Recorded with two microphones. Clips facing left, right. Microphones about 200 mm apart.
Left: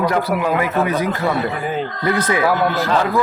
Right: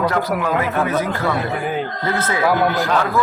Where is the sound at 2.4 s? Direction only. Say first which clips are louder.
Even; centre (ahead or behind).